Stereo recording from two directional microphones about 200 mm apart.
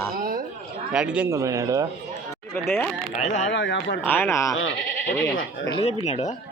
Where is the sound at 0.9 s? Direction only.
5° right (ahead or behind).